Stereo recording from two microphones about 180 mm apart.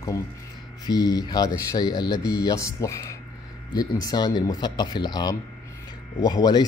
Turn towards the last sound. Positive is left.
turn(degrees=20)  # may be behind; listen again after turning